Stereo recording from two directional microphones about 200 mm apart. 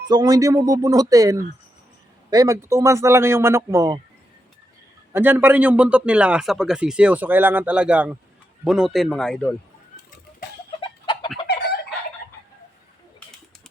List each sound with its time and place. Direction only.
0.1 s speech: 20° right (ahead or behind)
5.1 s a man's voice: 10° right (ahead or behind)
10.8 s chicken: 25° left (ahead or behind)